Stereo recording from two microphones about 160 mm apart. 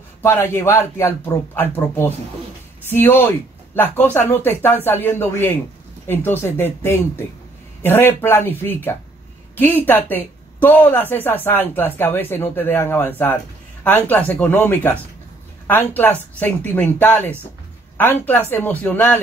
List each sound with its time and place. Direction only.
0.2 s a woman's voice: 15° left (ahead or behind)